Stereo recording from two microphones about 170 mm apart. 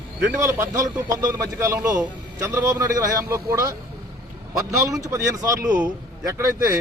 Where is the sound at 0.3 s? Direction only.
15° right (ahead or behind).